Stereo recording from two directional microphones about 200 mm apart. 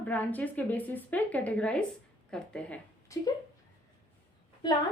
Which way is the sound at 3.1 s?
15° left (ahead or behind).